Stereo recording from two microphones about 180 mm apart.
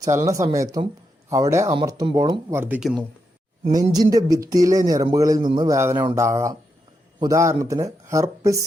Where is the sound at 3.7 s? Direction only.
20° right (ahead or behind).